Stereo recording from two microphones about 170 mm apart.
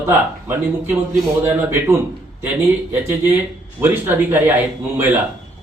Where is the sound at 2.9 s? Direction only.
10° right (ahead or behind).